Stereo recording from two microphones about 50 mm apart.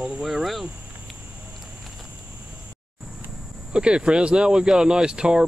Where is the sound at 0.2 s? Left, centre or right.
Centre.